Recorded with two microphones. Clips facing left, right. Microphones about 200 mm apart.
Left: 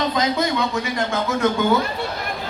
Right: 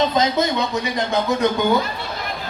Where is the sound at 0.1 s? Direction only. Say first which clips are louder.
Right 2 dB; 20° right (ahead or behind).